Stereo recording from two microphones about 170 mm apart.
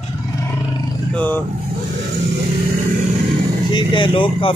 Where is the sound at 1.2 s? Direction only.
10° left (ahead or behind).